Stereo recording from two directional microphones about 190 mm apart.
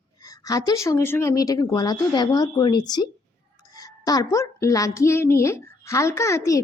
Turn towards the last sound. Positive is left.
turn(degrees=15)  # may be behind; listen again after turning